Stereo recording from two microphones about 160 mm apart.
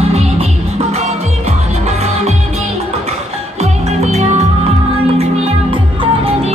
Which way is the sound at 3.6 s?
40° right (ahead or behind).